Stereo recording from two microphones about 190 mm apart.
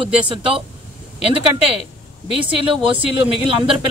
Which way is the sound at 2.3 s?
25° right (ahead or behind).